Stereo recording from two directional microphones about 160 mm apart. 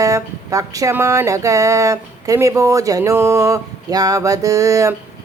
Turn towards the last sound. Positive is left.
turn(degrees=-20)  # may be behind; listen again after turning